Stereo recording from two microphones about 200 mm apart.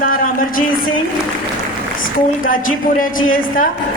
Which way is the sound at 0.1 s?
45° left (ahead or behind).